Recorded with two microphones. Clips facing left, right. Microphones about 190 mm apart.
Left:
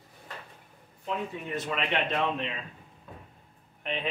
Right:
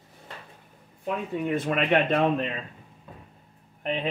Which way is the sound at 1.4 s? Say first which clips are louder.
Right 7 dB; 55° right (ahead or behind).